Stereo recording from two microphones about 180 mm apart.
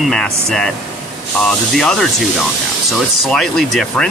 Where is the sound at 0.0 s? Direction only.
5° left (ahead or behind).